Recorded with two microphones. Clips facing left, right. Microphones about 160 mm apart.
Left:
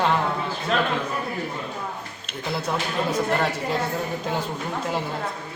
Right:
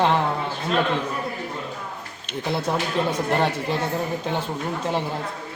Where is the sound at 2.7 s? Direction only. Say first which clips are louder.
Even; 30° right (ahead or behind).